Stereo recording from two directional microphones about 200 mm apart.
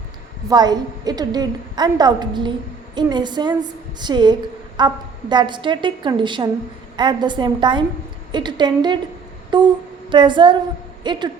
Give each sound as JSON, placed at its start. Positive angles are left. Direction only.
{"t": 0.5, "sound": "a woman's voice", "side_deg": -20}